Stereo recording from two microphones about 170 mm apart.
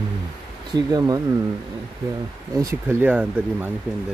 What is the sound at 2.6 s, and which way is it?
Speech, 20° right (ahead or behind).